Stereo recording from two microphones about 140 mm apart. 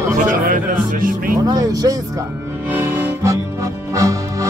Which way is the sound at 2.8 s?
15° right (ahead or behind).